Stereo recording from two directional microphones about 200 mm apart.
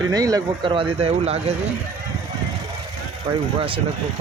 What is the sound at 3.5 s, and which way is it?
Speech, 25° right (ahead or behind).